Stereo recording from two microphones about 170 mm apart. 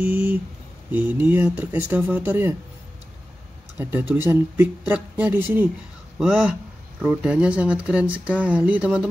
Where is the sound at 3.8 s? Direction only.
10° right (ahead or behind).